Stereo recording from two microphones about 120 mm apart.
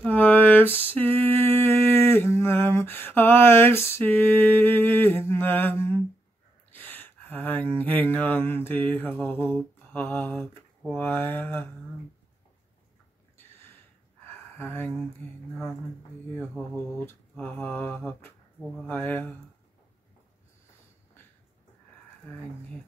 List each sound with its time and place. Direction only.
0.0 s a sound: 15° left (ahead or behind)
11.0 s mantra: 15° left (ahead or behind)
14.6 s mantra: 15° left (ahead or behind)
16.3 s mantra: 15° left (ahead or behind)